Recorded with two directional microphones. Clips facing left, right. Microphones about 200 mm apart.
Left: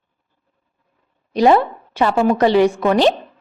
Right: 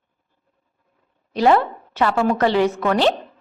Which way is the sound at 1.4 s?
15° left (ahead or behind).